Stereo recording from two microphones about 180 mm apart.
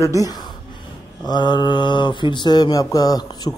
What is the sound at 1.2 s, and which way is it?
Mantra, 25° left (ahead or behind).